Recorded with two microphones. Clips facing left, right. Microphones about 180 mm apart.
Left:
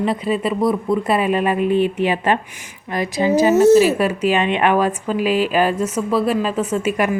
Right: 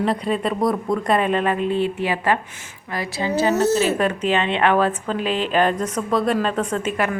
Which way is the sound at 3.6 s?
10° left (ahead or behind).